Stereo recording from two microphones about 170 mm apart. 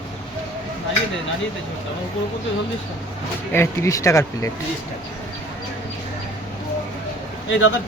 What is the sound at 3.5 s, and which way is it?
Speech, 15° left (ahead or behind).